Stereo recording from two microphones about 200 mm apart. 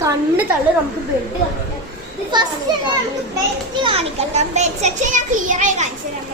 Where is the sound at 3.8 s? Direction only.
30° right (ahead or behind).